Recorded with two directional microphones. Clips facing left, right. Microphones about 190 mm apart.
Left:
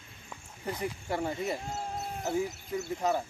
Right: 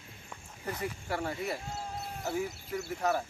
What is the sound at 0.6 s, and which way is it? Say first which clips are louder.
Speech: left 2 dB; 15° left (ahead or behind).